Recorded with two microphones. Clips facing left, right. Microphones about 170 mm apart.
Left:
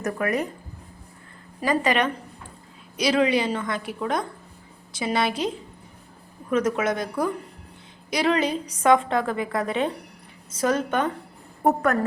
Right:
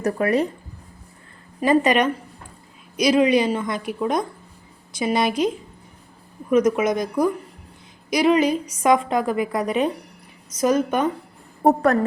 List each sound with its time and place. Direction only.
0.0 s speech: 30° right (ahead or behind)
1.6 s a woman's voice: 20° right (ahead or behind)
6.5 s a woman's voice: 15° right (ahead or behind)
11.6 s speech: 35° right (ahead or behind)